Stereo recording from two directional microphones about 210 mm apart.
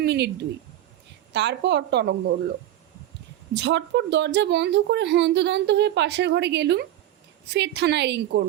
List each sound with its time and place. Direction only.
0.0 s speech: 50° right (ahead or behind)
1.3 s speech: 55° right (ahead or behind)
3.5 s a woman's voice: 55° right (ahead or behind)